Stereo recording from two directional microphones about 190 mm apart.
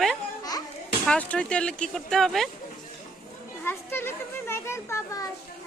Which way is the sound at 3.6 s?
10° left (ahead or behind).